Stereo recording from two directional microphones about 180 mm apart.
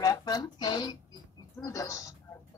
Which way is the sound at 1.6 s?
20° left (ahead or behind).